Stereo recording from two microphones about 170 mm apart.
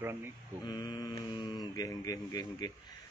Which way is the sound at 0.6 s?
25° left (ahead or behind).